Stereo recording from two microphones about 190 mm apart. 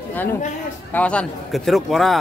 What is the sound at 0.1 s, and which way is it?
A man's voice, 10° left (ahead or behind).